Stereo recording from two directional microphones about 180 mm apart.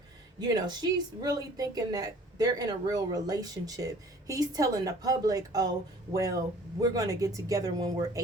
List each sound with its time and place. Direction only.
0.3 s speech: 20° right (ahead or behind)
6.8 s speech: 20° right (ahead or behind)